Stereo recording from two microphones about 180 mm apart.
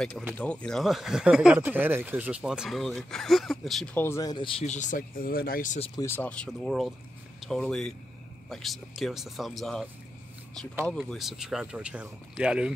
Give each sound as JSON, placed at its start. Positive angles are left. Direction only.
{"t": 0.4, "sound": "speech", "side_deg": 5}
{"t": 4.6, "sound": "speech", "side_deg": 45}
{"t": 5.9, "sound": "speech", "side_deg": 10}
{"t": 10.9, "sound": "speech", "side_deg": 0}